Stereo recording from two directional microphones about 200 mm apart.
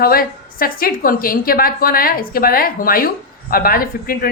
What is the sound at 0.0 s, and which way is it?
A woman's voice, 45° left (ahead or behind).